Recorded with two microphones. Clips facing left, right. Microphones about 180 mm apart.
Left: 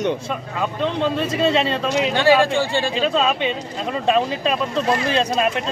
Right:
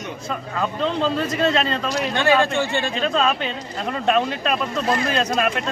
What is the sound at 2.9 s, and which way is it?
Speech, 10° left (ahead or behind).